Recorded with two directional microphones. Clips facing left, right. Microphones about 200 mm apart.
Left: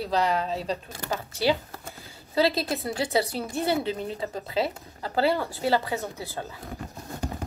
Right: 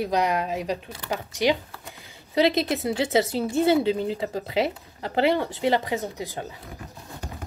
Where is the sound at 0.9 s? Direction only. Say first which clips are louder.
Right 1 dB; 45° left (ahead or behind).